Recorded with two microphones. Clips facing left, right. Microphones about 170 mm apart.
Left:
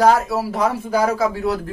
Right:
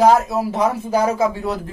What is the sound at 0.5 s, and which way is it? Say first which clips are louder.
Speech: right 1 dB; 25° right (ahead or behind).